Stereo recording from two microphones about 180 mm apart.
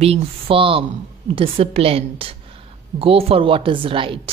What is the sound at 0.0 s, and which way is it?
A woman's voice, 30° right (ahead or behind).